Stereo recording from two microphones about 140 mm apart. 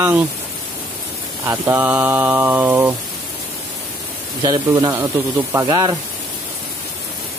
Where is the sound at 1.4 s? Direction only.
15° right (ahead or behind).